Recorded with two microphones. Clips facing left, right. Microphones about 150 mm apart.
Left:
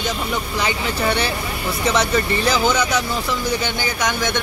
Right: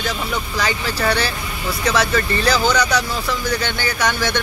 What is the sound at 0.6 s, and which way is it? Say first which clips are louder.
Speech: right 1 dB; 20° left (ahead or behind).